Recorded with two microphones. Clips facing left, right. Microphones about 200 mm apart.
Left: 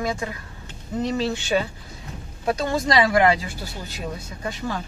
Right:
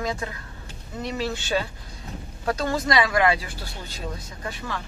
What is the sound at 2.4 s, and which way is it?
Speech, 20° left (ahead or behind).